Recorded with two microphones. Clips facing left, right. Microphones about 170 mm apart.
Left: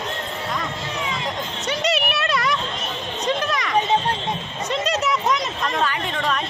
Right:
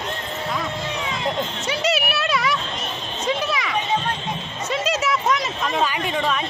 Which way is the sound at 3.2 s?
5° right (ahead or behind).